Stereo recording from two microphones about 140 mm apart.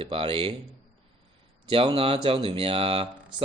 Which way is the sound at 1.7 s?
40° right (ahead or behind).